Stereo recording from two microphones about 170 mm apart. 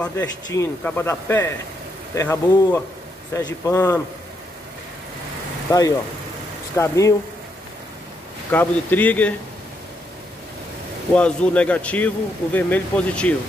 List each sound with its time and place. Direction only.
0.0 s speech: 15° left (ahead or behind)
5.7 s speech: 20° left (ahead or behind)
8.5 s speech: 10° left (ahead or behind)
11.1 s speech: 5° left (ahead or behind)